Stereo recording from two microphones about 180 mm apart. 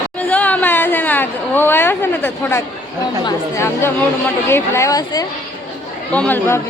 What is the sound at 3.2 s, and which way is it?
A woman's voice, 15° left (ahead or behind).